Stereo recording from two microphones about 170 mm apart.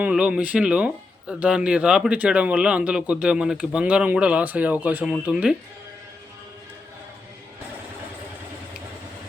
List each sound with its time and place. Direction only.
0.0 s speech: 5° right (ahead or behind)